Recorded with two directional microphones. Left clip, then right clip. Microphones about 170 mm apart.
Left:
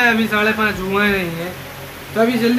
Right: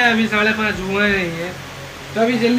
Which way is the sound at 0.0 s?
15° left (ahead or behind).